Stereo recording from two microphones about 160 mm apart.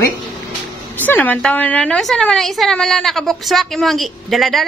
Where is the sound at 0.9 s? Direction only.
10° left (ahead or behind).